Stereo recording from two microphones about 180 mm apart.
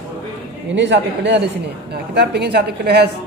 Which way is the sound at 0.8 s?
80° right.